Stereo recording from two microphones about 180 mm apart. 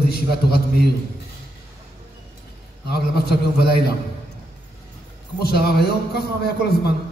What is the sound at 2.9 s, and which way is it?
Speech, 60° left (ahead or behind).